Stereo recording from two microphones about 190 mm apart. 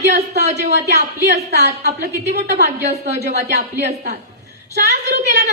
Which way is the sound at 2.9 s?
35° right (ahead or behind).